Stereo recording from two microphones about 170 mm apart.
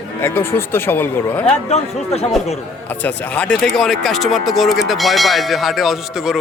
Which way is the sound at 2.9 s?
10° left (ahead or behind).